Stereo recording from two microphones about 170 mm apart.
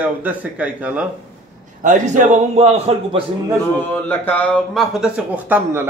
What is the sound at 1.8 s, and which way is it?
A man's voice, 45° right (ahead or behind).